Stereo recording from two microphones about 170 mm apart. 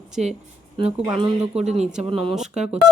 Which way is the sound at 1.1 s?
30° right (ahead or behind).